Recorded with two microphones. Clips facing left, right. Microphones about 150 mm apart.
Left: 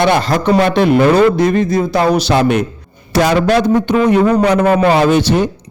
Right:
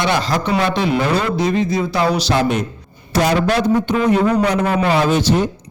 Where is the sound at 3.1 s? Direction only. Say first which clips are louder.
Left 4 dB; 85° left; by 5.0 s 50° left (ahead or behind).